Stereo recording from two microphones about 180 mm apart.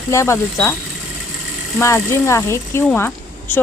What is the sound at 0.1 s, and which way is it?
Speech, 15° left (ahead or behind).